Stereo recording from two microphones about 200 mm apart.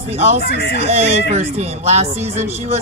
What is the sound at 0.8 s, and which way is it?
Speech, 30° right (ahead or behind).